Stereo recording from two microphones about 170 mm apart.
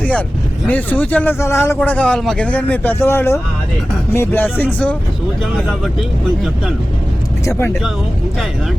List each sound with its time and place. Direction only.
0.0 s a sound: 10° left (ahead or behind)
0.7 s speech: 10° left (ahead or behind)
7.4 s speech: 15° left (ahead or behind)